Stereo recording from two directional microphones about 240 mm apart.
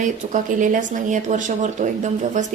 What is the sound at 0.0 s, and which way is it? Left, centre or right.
A woman's voice, right.